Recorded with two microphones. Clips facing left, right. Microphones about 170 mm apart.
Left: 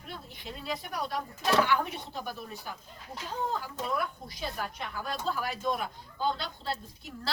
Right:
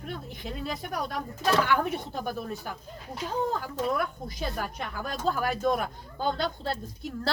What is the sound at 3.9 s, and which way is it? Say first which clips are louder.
A woman's voice: right 3 dB; 50° right (ahead or behind).